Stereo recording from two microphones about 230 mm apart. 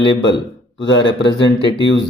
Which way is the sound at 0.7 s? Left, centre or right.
Left.